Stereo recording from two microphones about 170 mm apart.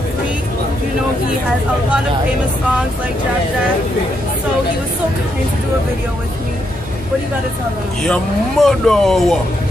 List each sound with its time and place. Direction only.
8.0 s speech: 5° left (ahead or behind)